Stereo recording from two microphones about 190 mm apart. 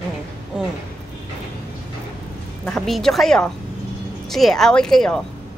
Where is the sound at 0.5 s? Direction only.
5° right (ahead or behind).